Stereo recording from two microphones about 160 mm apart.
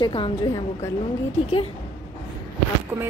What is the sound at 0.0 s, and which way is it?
Speech, 30° left (ahead or behind).